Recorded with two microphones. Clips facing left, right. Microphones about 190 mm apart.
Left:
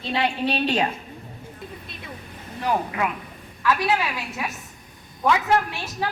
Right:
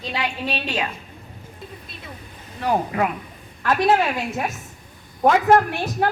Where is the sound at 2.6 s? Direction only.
40° right (ahead or behind).